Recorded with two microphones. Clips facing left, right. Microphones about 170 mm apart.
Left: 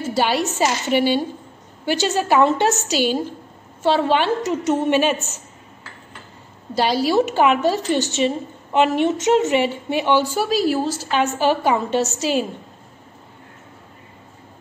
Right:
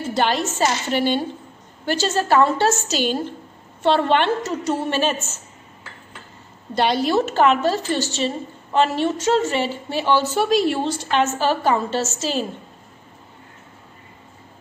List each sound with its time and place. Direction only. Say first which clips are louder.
0.0 s a woman's voice: left 1 dB; 5° left (ahead or behind)
4.4 s a woman's voice: left 3 dB; 20° left (ahead or behind)
6.7 s a woman's voice: left 1 dB; 5° left (ahead or behind)